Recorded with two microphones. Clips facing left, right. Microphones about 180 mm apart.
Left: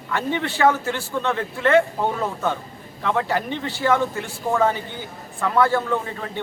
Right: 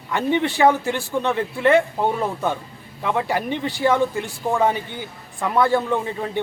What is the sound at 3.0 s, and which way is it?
A man's voice, 15° right (ahead or behind).